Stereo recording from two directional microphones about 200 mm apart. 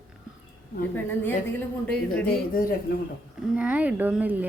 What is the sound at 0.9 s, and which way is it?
A woman's voice, 10° left (ahead or behind).